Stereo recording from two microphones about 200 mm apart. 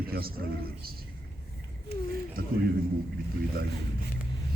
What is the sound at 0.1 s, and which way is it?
Speech, 50° right (ahead or behind).